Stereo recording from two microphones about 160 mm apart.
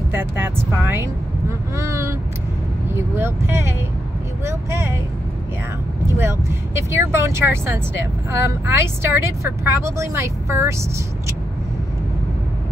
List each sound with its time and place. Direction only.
0.1 s speech: 15° right (ahead or behind)
3.2 s speech: 15° right (ahead or behind)
6.1 s speech: 15° right (ahead or behind)